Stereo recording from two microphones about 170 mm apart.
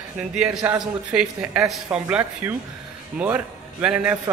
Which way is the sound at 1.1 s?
5° right (ahead or behind).